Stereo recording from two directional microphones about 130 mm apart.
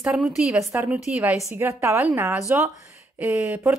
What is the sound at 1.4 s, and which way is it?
A woman's voice, 20° right (ahead or behind).